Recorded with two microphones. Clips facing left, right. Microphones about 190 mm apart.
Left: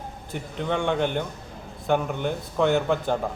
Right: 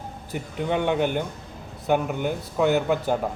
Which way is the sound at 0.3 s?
10° right (ahead or behind).